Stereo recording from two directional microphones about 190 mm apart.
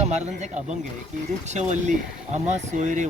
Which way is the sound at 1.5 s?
40° right (ahead or behind).